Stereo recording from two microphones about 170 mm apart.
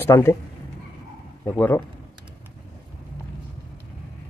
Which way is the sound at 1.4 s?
10° left (ahead or behind).